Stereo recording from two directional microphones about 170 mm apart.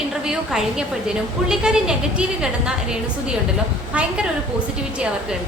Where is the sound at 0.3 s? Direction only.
5° right (ahead or behind).